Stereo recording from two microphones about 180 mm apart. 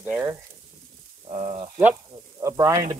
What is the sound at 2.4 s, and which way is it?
Speech, 15° right (ahead or behind).